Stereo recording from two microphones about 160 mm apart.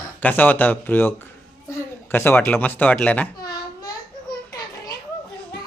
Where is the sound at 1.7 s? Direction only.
15° left (ahead or behind).